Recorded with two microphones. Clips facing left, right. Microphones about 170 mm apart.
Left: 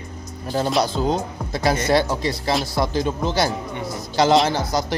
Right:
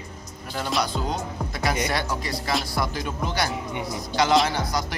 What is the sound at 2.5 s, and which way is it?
Speech, centre (ahead or behind).